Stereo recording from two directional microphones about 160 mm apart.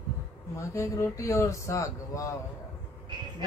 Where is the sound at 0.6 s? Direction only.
20° left (ahead or behind).